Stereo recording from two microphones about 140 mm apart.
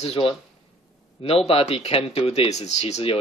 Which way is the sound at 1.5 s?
45° left (ahead or behind).